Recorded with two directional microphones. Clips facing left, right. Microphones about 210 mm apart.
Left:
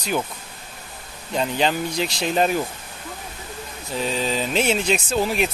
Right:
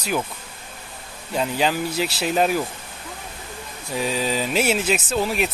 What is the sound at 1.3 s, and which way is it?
Speech, 5° right (ahead or behind).